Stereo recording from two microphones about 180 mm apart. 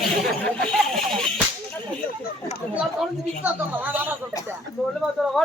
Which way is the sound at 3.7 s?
10° right (ahead or behind).